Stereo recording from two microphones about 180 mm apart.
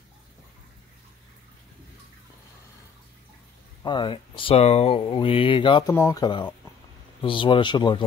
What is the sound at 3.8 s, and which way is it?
Speech, 25° left (ahead or behind).